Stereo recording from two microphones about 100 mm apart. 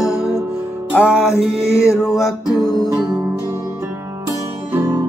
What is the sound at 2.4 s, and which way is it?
Music, 45° left (ahead or behind).